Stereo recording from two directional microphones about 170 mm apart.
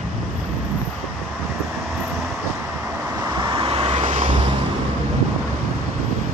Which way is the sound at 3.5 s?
30° right (ahead or behind).